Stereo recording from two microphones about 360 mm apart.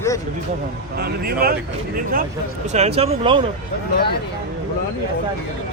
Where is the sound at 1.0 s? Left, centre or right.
Right.